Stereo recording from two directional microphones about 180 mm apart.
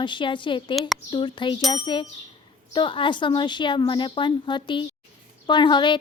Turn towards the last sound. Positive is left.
turn(degrees=25)  # may be behind; listen again after turning